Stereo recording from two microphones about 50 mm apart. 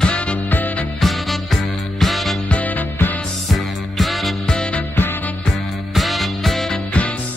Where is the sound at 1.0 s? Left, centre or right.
Centre.